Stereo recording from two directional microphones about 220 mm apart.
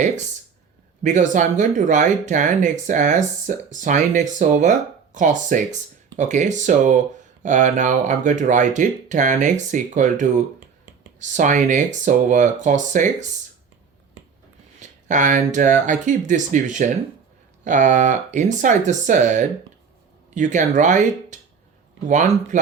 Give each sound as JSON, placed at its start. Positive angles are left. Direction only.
{"t": 1.0, "sound": "speech", "side_deg": -35}
{"t": 14.8, "sound": "speech", "side_deg": -35}